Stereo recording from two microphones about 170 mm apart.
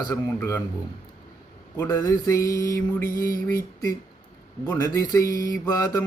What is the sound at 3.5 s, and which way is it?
Speech, 15° left (ahead or behind).